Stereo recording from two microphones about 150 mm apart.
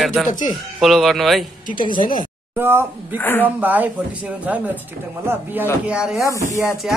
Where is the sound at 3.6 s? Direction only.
10° right (ahead or behind).